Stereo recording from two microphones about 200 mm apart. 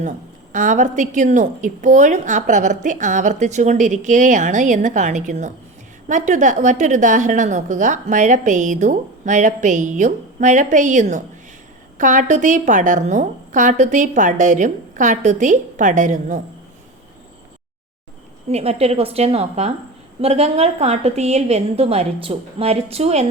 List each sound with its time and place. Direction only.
0.5 s a woman's voice: 40° right (ahead or behind)
18.4 s a woman's voice: 30° right (ahead or behind)